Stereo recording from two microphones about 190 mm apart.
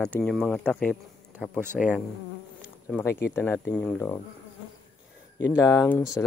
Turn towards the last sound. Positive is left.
turn(degrees=15)  # may be behind; listen again after turning